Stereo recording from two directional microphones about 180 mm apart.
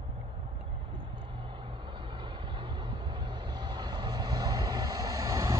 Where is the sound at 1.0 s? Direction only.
30° right (ahead or behind).